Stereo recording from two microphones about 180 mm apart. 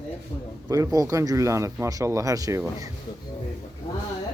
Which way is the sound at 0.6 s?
20° right (ahead or behind).